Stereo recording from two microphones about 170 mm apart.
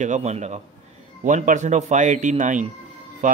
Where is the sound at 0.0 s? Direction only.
45° right (ahead or behind).